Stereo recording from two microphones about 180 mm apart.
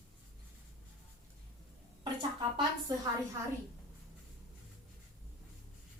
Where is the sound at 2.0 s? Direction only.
25° right (ahead or behind).